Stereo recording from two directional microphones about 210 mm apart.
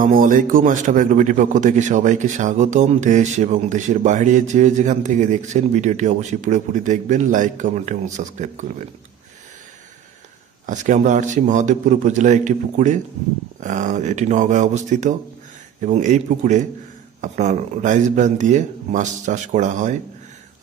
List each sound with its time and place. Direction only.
0.0 s a man's voice: 40° right (ahead or behind)
10.7 s a man's voice: 35° right (ahead or behind)